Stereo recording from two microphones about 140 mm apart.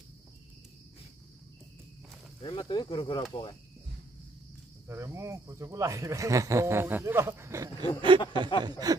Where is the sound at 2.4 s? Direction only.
35° left (ahead or behind).